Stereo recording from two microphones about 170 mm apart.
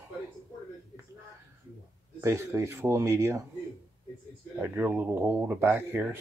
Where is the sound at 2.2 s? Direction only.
15° right (ahead or behind).